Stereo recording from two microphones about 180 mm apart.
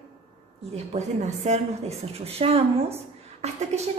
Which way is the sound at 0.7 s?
40° right (ahead or behind).